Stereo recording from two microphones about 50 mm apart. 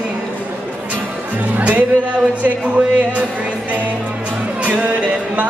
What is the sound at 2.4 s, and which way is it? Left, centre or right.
Speech, right.